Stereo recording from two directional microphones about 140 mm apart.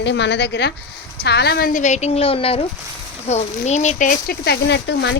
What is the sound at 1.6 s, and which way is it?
A woman's voice, 65° left (ahead or behind).